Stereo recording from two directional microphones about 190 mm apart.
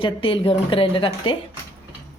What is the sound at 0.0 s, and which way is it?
Speech, 30° left (ahead or behind).